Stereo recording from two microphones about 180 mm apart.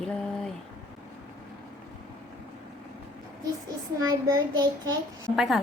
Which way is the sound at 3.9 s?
20° right (ahead or behind).